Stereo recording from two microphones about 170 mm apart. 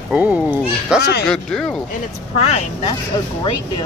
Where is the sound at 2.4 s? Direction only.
35° left (ahead or behind).